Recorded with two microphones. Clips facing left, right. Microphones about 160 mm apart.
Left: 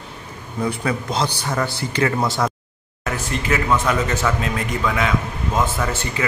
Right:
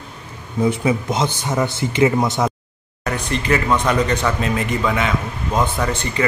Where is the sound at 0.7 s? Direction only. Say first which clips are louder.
Right 4 dB; 20° right (ahead or behind).